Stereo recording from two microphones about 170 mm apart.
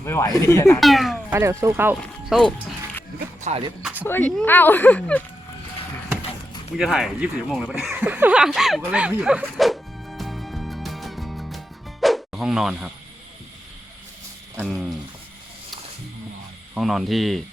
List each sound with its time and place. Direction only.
0.0 s speech: 15° left (ahead or behind)
0.8 s speech: centre (ahead or behind)
1.3 s speech: 15° right (ahead or behind)
2.4 s speech: centre (ahead or behind)
3.5 s speech: 40° right (ahead or behind)
4.0 s speech: 10° left (ahead or behind)
6.7 s speech: centre (ahead or behind)
8.9 s music: 5° right (ahead or behind)
14.6 s speech: centre (ahead or behind)
16.7 s speech: centre (ahead or behind)